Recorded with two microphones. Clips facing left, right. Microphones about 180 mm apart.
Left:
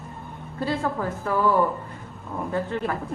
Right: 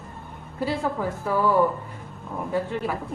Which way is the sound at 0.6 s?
10° right (ahead or behind).